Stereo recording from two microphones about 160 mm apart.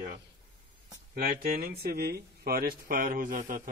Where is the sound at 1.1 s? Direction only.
65° right (ahead or behind).